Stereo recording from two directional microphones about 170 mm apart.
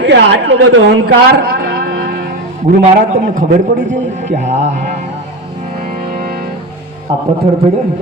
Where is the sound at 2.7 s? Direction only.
60° right (ahead or behind).